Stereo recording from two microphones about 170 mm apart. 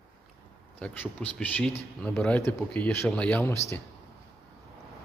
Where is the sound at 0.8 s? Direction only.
10° left (ahead or behind).